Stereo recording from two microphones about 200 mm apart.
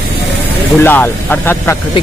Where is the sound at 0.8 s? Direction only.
10° left (ahead or behind).